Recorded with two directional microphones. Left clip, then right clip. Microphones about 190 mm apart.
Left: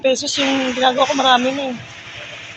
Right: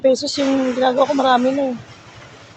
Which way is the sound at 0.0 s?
25° right (ahead or behind).